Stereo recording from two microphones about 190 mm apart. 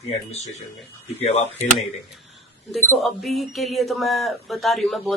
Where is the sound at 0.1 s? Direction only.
35° left (ahead or behind).